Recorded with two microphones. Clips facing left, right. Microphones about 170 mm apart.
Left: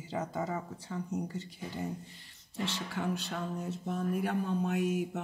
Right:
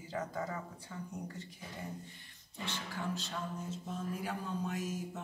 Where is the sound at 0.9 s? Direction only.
55° left (ahead or behind).